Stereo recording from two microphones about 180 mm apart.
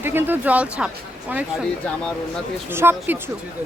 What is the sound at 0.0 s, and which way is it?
Speech, 10° right (ahead or behind).